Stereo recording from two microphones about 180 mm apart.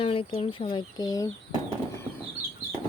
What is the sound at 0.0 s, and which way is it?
Speech, 30° left (ahead or behind).